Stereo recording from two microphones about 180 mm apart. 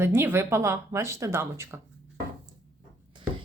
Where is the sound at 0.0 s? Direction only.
15° right (ahead or behind).